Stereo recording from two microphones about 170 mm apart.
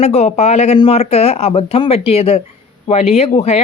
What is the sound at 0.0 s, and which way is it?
Speech, 40° left (ahead or behind).